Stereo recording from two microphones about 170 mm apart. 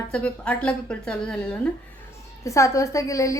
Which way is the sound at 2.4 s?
20° left (ahead or behind).